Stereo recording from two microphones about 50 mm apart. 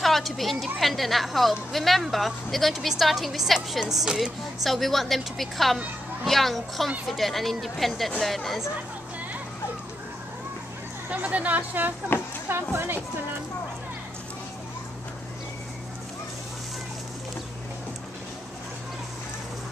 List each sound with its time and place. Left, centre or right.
0.0 s a woman's voice: centre
11.1 s speech: right
12.1 s speech: left
12.5 s speech: right